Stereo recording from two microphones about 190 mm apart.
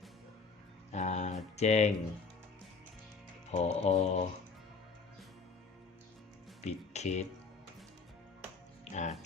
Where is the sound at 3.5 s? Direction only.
35° left (ahead or behind).